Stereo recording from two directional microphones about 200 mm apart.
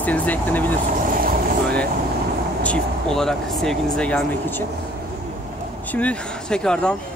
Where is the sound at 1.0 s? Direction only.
45° right (ahead or behind).